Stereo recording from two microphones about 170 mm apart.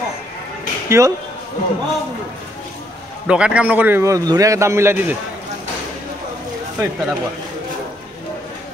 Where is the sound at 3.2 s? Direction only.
5° right (ahead or behind).